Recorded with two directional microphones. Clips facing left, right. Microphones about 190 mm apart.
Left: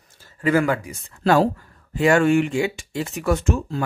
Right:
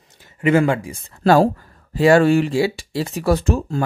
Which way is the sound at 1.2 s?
45° right (ahead or behind).